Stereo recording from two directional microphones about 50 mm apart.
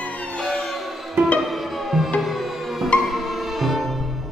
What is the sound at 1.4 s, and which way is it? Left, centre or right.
Music, centre.